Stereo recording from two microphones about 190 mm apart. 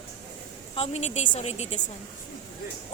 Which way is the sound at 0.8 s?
35° left (ahead or behind).